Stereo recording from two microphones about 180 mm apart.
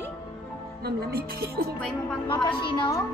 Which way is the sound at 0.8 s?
55° right (ahead or behind).